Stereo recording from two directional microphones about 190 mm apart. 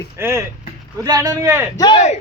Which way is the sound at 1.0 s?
20° right (ahead or behind).